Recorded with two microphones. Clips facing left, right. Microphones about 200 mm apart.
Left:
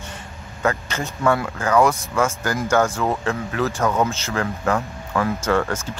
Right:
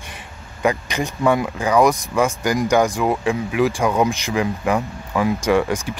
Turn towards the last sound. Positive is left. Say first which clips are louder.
# right 3 dB
turn(degrees=-15)  # may be behind; listen again after turning